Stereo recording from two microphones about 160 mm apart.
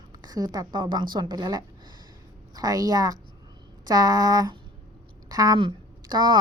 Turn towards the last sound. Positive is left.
turn(degrees=-25)  # may be behind; listen again after turning